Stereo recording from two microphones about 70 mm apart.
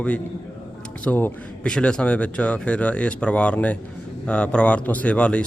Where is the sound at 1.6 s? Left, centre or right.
Centre.